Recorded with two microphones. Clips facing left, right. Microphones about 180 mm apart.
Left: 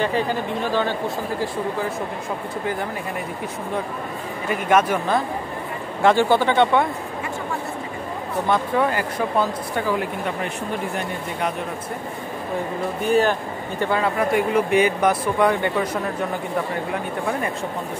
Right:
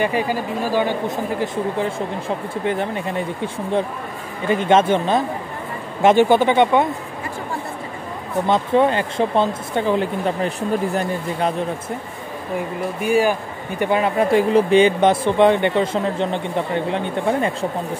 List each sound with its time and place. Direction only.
0.0 s speech: 10° right (ahead or behind)
4.5 s speech: 25° right (ahead or behind)
8.5 s speech: 20° right (ahead or behind)
13.0 s speech: 10° right (ahead or behind); by 17.6 s 25° right (ahead or behind)